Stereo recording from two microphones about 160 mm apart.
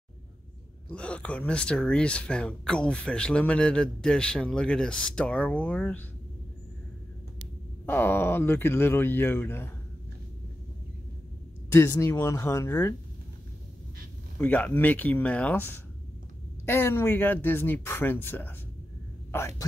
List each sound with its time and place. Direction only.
0.8 s speech: 5° left (ahead or behind)
7.8 s speech: 15° left (ahead or behind)
11.7 s speech: 15° left (ahead or behind)
14.4 s speech: 10° left (ahead or behind)